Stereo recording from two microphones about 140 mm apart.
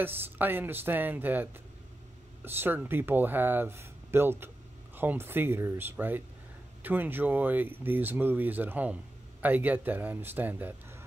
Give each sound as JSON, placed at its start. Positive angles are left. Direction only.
{"t": 0.0, "sound": "speech", "side_deg": -15}